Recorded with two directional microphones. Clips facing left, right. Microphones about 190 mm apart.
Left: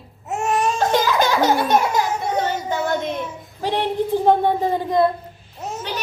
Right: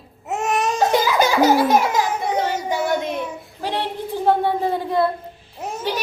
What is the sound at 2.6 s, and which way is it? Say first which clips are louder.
Music: right 1 dB; 15° right (ahead or behind).